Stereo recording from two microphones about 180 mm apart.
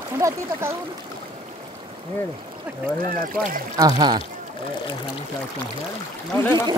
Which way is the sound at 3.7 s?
20° right (ahead or behind).